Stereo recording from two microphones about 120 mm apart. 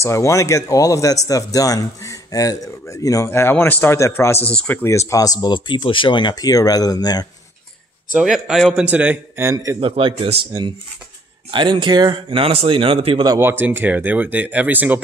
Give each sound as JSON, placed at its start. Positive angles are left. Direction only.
{"t": 0.0, "sound": "speech", "side_deg": 25}
{"t": 4.5, "sound": "speech", "side_deg": 10}
{"t": 4.8, "sound": "speech", "side_deg": 25}
{"t": 8.2, "sound": "a man's voice", "side_deg": -5}
{"t": 8.8, "sound": "a man's voice", "side_deg": -15}
{"t": 9.8, "sound": "speech", "side_deg": -45}
{"t": 11.5, "sound": "speech", "side_deg": -40}
{"t": 13.4, "sound": "speech", "side_deg": -20}